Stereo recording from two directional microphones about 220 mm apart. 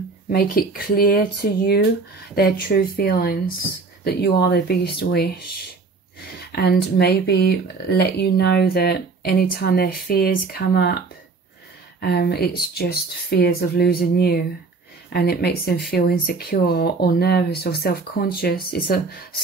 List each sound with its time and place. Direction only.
0.3 s speech: 45° left (ahead or behind)